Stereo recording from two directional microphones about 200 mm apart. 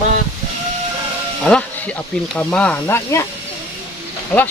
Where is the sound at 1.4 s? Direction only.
5° left (ahead or behind).